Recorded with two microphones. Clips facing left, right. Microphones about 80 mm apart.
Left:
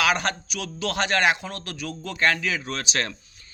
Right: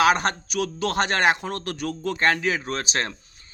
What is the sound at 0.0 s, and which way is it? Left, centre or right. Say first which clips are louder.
Speech: right 4 dB; right.